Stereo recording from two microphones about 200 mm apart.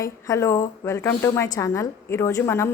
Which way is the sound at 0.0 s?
15° left (ahead or behind).